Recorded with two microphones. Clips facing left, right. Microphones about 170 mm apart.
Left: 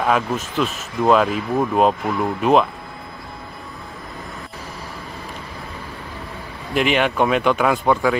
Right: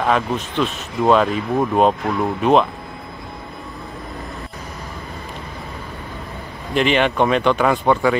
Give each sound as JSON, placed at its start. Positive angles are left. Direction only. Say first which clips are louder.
{"t": 0.0, "sound": "speech", "louder": "right 1 dB", "side_deg": 5}
{"t": 6.7, "sound": "speech", "louder": "right 1 dB", "side_deg": 5}